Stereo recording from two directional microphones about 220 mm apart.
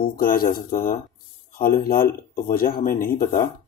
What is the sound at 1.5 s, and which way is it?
Speech, 40° left (ahead or behind).